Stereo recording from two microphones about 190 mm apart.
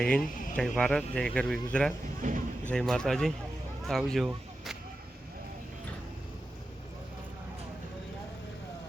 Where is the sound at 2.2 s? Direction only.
40° right (ahead or behind).